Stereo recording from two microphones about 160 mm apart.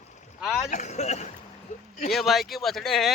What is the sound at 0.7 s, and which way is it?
Speech, 45° left (ahead or behind).